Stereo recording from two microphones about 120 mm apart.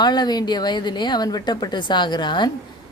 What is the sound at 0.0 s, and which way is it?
A woman's voice, 35° left (ahead or behind).